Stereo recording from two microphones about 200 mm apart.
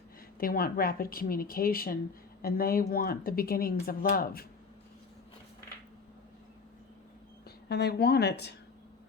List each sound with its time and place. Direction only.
0.3 s speech: 45° left (ahead or behind)
7.4 s a woman's voice: 55° left (ahead or behind)